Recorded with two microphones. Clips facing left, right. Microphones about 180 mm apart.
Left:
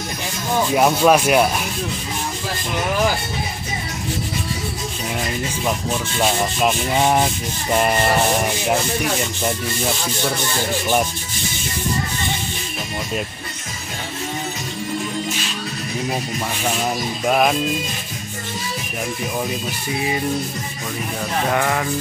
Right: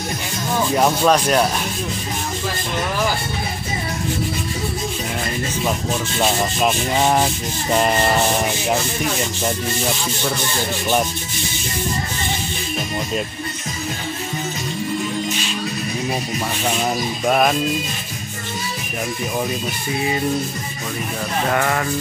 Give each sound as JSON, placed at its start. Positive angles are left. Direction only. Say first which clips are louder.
{"t": 0.7, "sound": "rub", "louder": "left 2 dB", "side_deg": 5}
{"t": 6.2, "sound": "rub", "louder": "even", "side_deg": 0}
{"t": 17.3, "sound": "rub", "louder": "even", "side_deg": 5}
{"t": 21.5, "sound": "rub", "louder": "even", "side_deg": 5}